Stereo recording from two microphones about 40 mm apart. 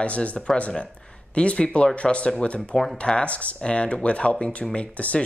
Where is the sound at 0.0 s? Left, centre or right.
Left.